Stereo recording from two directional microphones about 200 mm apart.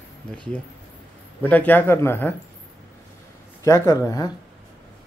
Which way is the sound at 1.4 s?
10° left (ahead or behind).